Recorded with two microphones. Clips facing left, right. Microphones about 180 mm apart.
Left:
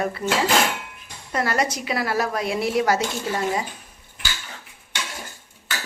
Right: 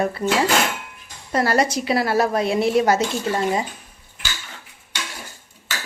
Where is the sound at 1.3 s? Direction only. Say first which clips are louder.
Right 4 dB; 30° right (ahead or behind).